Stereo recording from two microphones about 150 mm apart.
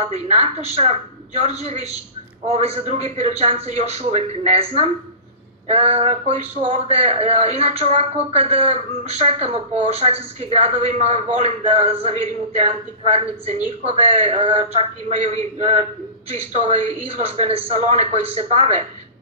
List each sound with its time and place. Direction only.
0.0 s a man's voice: 45° right (ahead or behind)